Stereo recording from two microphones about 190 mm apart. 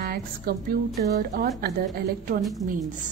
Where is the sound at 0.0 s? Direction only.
55° right (ahead or behind).